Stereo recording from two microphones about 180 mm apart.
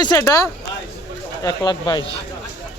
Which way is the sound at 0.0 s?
20° left (ahead or behind).